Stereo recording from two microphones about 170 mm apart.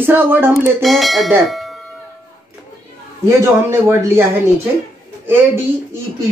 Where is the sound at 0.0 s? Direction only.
10° right (ahead or behind).